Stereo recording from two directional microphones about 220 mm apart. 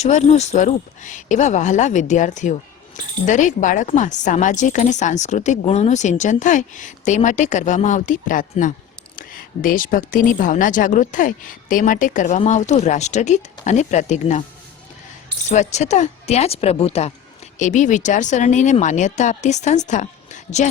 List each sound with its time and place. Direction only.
0.0 s speech: 30° left (ahead or behind)
15.4 s speech: 30° left (ahead or behind)